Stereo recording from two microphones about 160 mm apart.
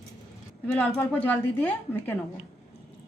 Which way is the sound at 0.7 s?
10° left (ahead or behind).